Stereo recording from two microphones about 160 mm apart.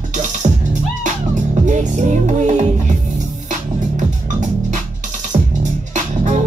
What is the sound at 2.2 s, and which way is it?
Music, 45° right (ahead or behind).